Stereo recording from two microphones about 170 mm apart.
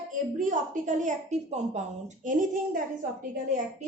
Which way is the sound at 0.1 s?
50° right (ahead or behind).